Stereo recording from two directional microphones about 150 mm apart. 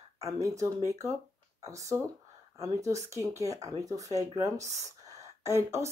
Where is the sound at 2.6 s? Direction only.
20° right (ahead or behind).